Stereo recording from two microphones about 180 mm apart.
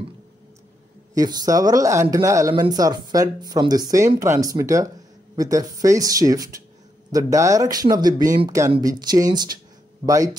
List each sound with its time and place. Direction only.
1.1 s speech: 20° right (ahead or behind)